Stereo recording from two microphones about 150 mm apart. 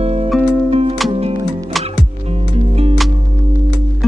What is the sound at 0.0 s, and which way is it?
Music, 45° right (ahead or behind).